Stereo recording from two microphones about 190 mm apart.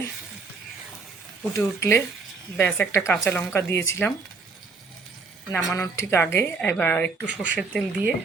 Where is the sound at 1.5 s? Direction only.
15° left (ahead or behind).